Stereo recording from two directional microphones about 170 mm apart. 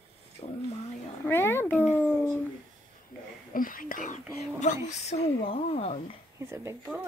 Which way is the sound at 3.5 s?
55° left (ahead or behind).